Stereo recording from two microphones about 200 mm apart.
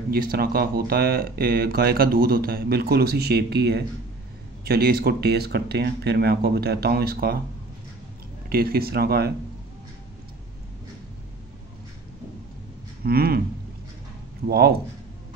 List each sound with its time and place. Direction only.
0.1 s speech: 50° right (ahead or behind)
8.5 s speech: 50° right (ahead or behind)
13.0 s speech: 50° right (ahead or behind)
14.5 s speech: 50° right (ahead or behind)